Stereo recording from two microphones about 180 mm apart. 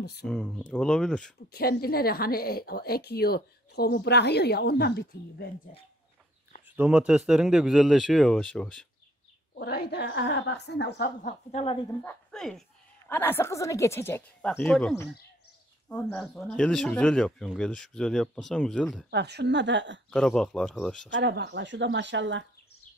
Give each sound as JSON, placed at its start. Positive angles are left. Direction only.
{"t": 0.0, "sound": "speech", "side_deg": 65}
{"t": 0.3, "sound": "speech", "side_deg": 5}
{"t": 1.5, "sound": "a woman's voice", "side_deg": 55}
{"t": 6.8, "sound": "speech", "side_deg": -5}
{"t": 9.6, "sound": "a woman's voice", "side_deg": 60}
{"t": 11.2, "sound": "a woman's voice", "side_deg": 35}
{"t": 12.0, "sound": "speech", "side_deg": 5}
{"t": 19.0, "sound": "a woman's voice", "side_deg": -65}
{"t": 20.1, "sound": "speech", "side_deg": 5}
{"t": 21.1, "sound": "speech", "side_deg": -75}